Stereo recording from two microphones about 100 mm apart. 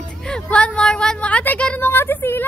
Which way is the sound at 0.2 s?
10° left (ahead or behind).